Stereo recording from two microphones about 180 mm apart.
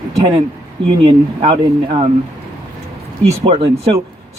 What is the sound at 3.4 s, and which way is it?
Speech, 30° right (ahead or behind).